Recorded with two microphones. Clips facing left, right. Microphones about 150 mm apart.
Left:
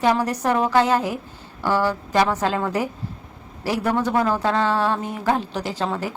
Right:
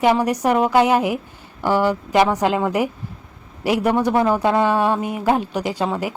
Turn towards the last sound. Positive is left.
turn(degrees=-15)  # may be behind; listen again after turning